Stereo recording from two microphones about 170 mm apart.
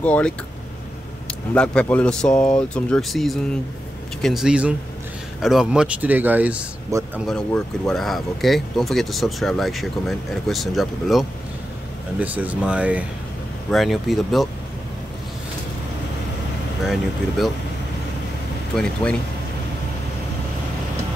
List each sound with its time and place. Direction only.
0.0 s speech: 10° left (ahead or behind); by 7.1 s 20° right (ahead or behind)
7.2 s speech: 5° left (ahead or behind)
16.8 s speech: centre (ahead or behind)